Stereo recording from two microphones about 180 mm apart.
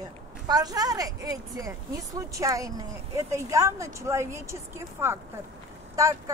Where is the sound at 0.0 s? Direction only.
20° right (ahead or behind).